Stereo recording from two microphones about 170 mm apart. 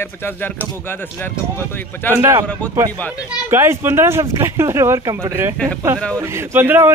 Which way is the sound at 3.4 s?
15° right (ahead or behind).